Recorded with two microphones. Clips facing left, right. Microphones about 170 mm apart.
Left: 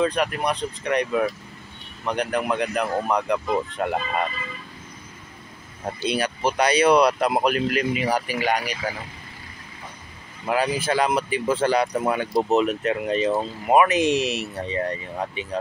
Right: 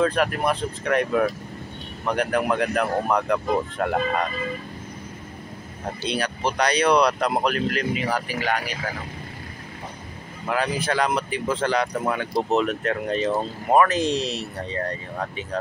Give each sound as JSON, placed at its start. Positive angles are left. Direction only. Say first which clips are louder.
{"t": 0.0, "sound": "speech", "louder": "right 1 dB", "side_deg": 0}
{"t": 6.0, "sound": "speech", "louder": "left 2 dB", "side_deg": 5}
{"t": 10.4, "sound": "speech", "louder": "left 2 dB", "side_deg": 10}
{"t": 14.0, "sound": "speech", "louder": "left 3 dB", "side_deg": 75}
{"t": 14.7, "sound": "speech", "louder": "left 2 dB", "side_deg": 15}